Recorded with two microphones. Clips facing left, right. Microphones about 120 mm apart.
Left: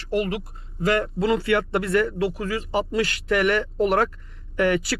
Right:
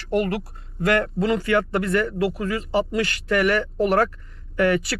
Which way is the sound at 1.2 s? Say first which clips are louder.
Left 2 dB; 25° left (ahead or behind).